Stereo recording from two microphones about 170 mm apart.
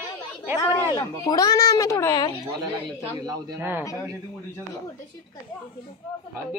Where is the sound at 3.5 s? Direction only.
15° right (ahead or behind).